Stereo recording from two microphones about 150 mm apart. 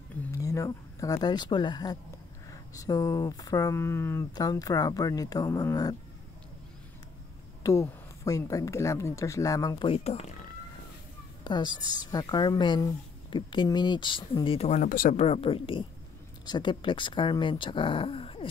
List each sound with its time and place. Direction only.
0.3 s speech: 20° left (ahead or behind)
7.6 s speech: 20° left (ahead or behind)
9.8 s speech: 40° left (ahead or behind)
11.4 s a woman's voice: 30° left (ahead or behind)
14.7 s speech: 60° left (ahead or behind)
15.1 s speech: 40° left (ahead or behind)